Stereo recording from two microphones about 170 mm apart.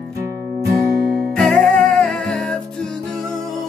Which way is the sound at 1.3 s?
5° left (ahead or behind).